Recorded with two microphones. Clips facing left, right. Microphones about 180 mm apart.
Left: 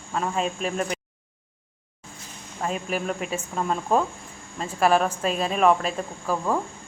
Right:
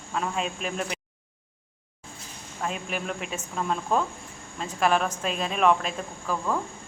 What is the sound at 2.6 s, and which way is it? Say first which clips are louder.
Speech: left 4 dB; 40° left (ahead or behind).